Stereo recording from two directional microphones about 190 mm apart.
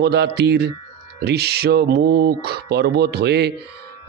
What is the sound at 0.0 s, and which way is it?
Speech, 60° right (ahead or behind).